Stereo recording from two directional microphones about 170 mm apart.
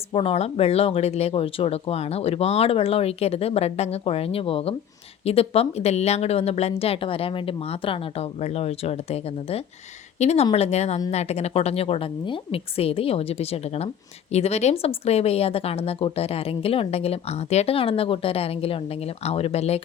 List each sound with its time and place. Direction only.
0.1 s speech: 35° left (ahead or behind)